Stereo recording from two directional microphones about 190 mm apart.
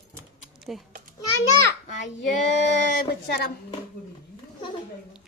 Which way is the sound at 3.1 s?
55° left (ahead or behind).